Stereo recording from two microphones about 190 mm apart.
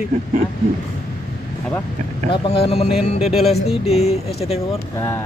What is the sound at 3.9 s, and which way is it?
Speech, 35° left (ahead or behind).